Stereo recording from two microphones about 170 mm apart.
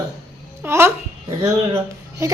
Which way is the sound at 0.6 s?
15° right (ahead or behind).